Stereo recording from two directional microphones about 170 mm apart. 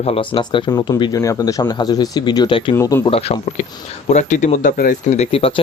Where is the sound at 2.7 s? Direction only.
15° left (ahead or behind).